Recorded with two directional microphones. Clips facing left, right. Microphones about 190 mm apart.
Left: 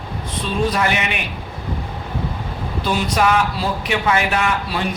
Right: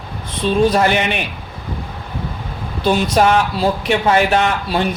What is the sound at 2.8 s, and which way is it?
Speech, 30° right (ahead or behind).